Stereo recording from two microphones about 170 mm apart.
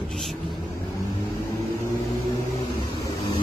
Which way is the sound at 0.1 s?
Centre (ahead or behind).